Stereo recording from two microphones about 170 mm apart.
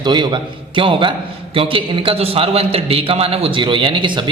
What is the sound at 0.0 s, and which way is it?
A man's voice, 25° right (ahead or behind).